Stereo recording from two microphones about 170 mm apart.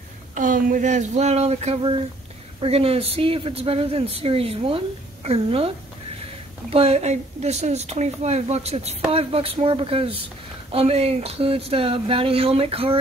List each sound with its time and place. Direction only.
0.3 s a woman's voice: 50° right (ahead or behind); by 5.7 s 35° right (ahead or behind)
6.7 s a woman's voice: 35° right (ahead or behind)